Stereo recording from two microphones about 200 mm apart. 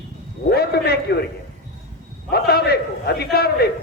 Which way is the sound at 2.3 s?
50° left (ahead or behind).